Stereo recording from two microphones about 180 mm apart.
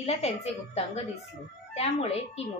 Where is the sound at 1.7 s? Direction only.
35° left (ahead or behind).